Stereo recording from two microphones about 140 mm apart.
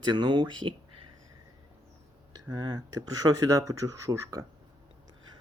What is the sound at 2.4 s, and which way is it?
Speech, 30° right (ahead or behind).